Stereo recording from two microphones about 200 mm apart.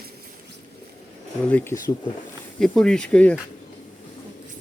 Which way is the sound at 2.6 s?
5° left (ahead or behind).